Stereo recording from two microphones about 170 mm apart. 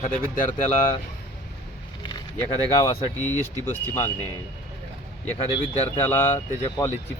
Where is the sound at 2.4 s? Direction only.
20° left (ahead or behind).